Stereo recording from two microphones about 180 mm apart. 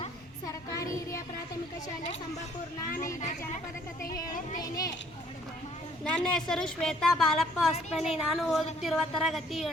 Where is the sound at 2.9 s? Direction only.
45° left (ahead or behind).